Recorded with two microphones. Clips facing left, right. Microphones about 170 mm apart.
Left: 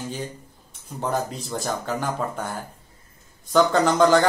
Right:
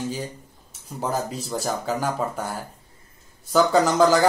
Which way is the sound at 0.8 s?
5° right (ahead or behind).